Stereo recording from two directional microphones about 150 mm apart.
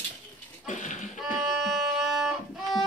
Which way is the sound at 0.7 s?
55° left (ahead or behind).